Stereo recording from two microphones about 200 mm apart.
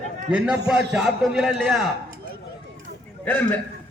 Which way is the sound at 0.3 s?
5° right (ahead or behind).